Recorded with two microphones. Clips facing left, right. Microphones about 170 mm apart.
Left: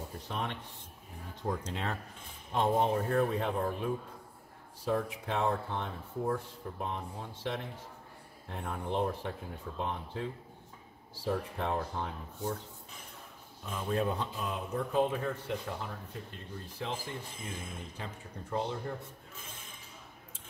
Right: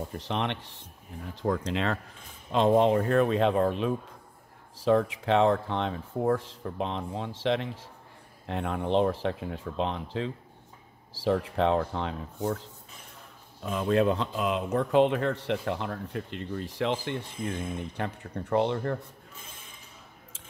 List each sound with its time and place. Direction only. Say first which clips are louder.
0.2 s speech: right 6 dB; 85° right